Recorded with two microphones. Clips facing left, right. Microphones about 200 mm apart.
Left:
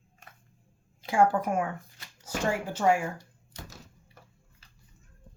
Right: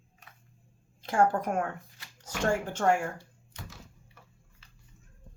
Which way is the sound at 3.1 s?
40° left (ahead or behind).